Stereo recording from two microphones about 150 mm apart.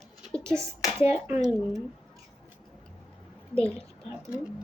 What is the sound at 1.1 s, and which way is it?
Speech, 5° right (ahead or behind).